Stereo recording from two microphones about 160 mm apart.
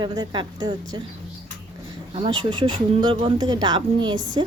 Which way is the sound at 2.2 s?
30° right (ahead or behind).